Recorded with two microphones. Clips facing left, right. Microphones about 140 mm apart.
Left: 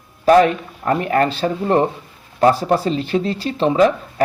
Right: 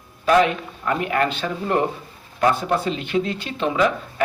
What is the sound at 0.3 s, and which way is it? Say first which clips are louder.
Speech: left 5 dB; 40° left (ahead or behind).